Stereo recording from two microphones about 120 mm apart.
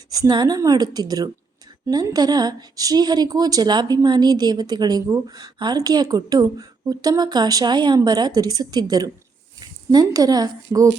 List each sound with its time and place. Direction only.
0.1 s a woman's voice: 35° right (ahead or behind)